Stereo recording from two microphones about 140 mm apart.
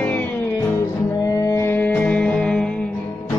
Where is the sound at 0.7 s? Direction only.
25° left (ahead or behind); by 2.9 s 10° left (ahead or behind).